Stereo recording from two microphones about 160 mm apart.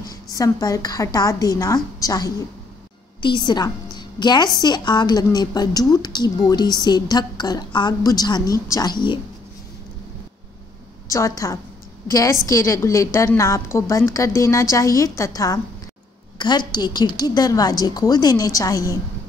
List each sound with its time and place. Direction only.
0.0 s a woman's voice: 20° left (ahead or behind)
11.1 s a woman's voice: 20° left (ahead or behind)